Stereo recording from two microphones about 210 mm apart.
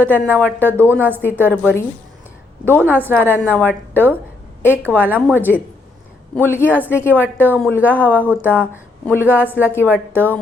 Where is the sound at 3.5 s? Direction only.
10° left (ahead or behind).